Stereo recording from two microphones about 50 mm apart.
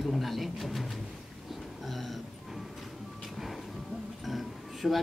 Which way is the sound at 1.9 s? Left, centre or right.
Centre.